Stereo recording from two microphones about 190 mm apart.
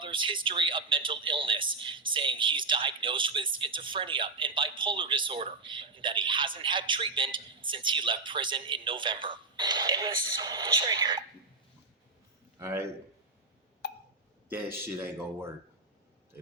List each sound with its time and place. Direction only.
0.0 s a man's voice: 25° right (ahead or behind)
12.5 s a man's voice: 15° right (ahead or behind)
13.8 s hiccup: 60° left (ahead or behind)
14.5 s speech: 10° right (ahead or behind)